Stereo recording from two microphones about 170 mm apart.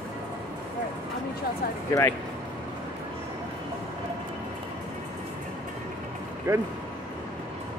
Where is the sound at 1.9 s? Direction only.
20° left (ahead or behind).